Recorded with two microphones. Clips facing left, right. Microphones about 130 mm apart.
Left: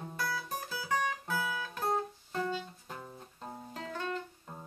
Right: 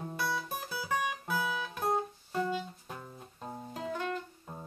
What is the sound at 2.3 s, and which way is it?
Music, 10° right (ahead or behind).